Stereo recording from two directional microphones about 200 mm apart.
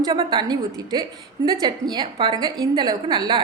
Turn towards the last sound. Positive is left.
turn(degrees=-20)  # may be behind; listen again after turning